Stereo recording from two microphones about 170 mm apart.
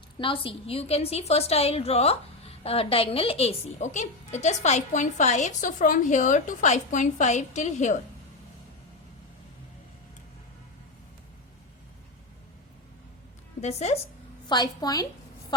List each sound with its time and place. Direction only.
0.2 s a woman's voice: 30° left (ahead or behind)
13.6 s a woman's voice: 40° left (ahead or behind)
14.4 s a woman's voice: 25° left (ahead or behind)